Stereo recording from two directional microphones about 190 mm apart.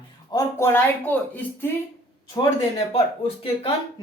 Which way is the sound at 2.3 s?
20° left (ahead or behind).